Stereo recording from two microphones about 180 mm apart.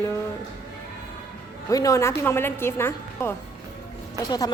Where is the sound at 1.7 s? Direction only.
20° left (ahead or behind).